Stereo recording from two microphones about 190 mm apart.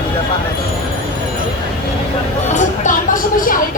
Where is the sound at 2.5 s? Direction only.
40° left (ahead or behind).